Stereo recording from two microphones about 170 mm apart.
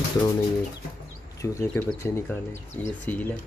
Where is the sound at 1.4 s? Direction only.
15° left (ahead or behind).